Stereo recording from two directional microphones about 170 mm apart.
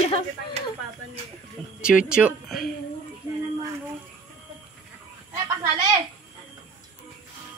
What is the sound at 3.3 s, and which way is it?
Child singing, 25° right (ahead or behind).